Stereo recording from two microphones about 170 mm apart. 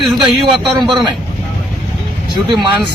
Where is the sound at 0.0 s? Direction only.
Centre (ahead or behind).